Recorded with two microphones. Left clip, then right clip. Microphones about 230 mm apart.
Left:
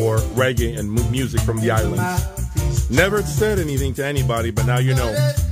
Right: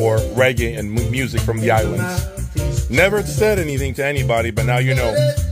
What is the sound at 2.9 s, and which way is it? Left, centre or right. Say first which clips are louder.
Speech: right 2 dB; centre.